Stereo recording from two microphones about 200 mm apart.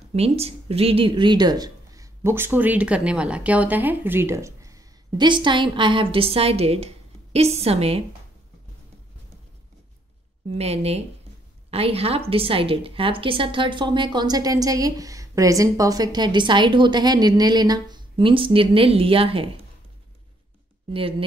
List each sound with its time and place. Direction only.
0.1 s a woman's voice: 30° right (ahead or behind)
10.5 s a woman's voice: 30° right (ahead or behind)
20.9 s a woman's voice: 25° right (ahead or behind)